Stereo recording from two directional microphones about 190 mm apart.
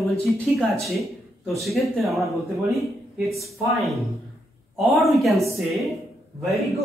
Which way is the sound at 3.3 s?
Centre (ahead or behind).